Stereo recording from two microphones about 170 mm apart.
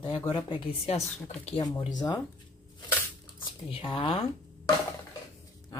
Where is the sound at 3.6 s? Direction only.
30° left (ahead or behind).